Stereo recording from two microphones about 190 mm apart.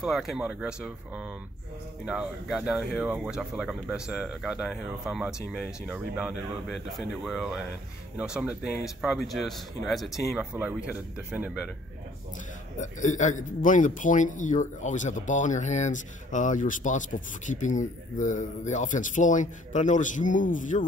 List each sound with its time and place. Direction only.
0.0 s speech: centre (ahead or behind)
12.7 s a man's voice: 40° left (ahead or behind)